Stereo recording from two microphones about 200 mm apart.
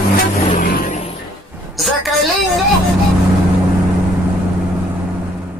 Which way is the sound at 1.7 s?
Centre (ahead or behind).